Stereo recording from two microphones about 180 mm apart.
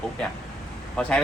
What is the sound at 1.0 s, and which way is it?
Speech, 5° left (ahead or behind).